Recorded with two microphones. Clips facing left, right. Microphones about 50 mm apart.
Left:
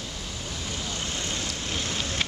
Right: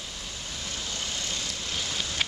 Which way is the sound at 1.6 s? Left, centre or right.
Left.